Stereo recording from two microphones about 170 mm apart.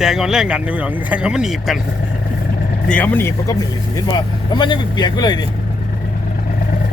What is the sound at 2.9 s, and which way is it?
Speech, 10° left (ahead or behind).